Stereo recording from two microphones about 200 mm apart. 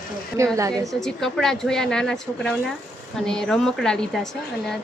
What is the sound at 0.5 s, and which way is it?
Speech, 15° right (ahead or behind).